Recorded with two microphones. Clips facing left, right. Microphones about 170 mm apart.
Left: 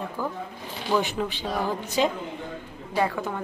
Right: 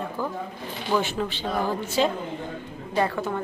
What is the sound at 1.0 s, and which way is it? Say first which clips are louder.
A woman's voice: right 1 dB; 10° left (ahead or behind).